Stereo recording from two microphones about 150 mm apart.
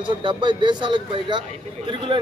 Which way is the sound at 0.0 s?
35° right (ahead or behind).